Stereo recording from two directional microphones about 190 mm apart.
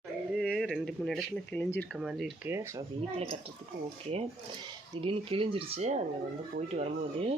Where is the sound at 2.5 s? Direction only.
15° right (ahead or behind).